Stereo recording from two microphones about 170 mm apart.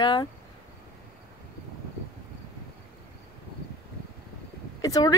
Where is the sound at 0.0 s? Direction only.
25° left (ahead or behind).